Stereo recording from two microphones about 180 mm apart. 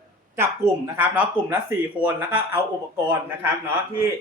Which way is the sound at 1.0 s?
10° right (ahead or behind).